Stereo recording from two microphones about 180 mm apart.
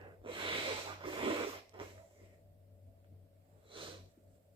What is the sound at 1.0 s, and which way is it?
Rub, 30° right (ahead or behind).